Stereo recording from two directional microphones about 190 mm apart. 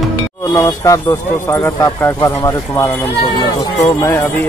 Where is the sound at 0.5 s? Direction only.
15° left (ahead or behind).